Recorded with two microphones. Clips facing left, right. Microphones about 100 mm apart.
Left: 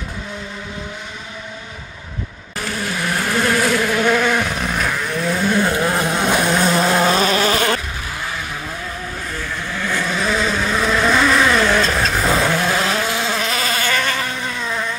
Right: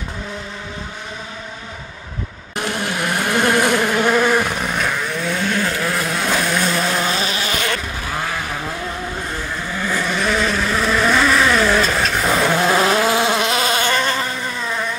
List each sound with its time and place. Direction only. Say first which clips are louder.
2.5 s vehicle: right 2 dB; 25° right (ahead or behind)
3.4 s insect: right 1 dB; 20° right (ahead or behind); by 5.6 s 5° left (ahead or behind)
5.6 s vehicle: left 3 dB; 25° left (ahead or behind)
6.5 s vehicle: left 3 dB; 40° left (ahead or behind)
9.8 s vehicle: even; 10° right (ahead or behind)
12.5 s vehicle: right 3 dB; 25° right (ahead or behind)
13.7 s insect: right 2 dB; 20° right (ahead or behind)
14.6 s vehicle: even; 5° right (ahead or behind)